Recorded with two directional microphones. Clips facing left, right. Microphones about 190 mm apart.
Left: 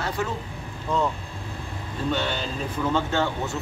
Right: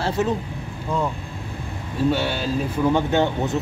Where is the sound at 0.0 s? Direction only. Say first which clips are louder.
Right 6 dB; 25° right (ahead or behind).